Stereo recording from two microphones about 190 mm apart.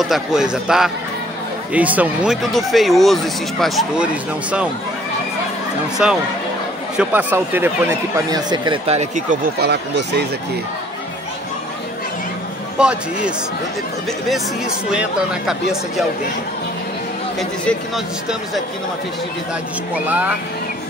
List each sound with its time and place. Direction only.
0.0 s speech: centre (ahead or behind)
6.0 s speech: 5° right (ahead or behind)
8.3 s speech: 20° right (ahead or behind)
8.8 s speech: 35° right (ahead or behind)
9.6 s speech: 60° right (ahead or behind)
12.7 s speech: 5° right (ahead or behind)
14.9 s speech: 5° right (ahead or behind)
17.4 s speech: centre (ahead or behind)